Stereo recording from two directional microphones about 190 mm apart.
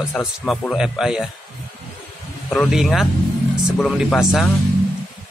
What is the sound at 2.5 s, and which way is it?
Speech, centre (ahead or behind).